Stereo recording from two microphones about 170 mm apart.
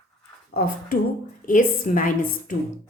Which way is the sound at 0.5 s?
55° left (ahead or behind).